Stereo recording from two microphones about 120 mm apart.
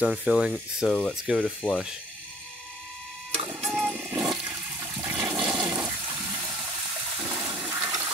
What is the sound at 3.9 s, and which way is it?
Toilet flush, 15° right (ahead or behind).